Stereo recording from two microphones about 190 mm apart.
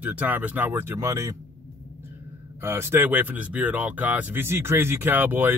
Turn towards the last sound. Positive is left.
turn(degrees=-10)  # may be behind; listen again after turning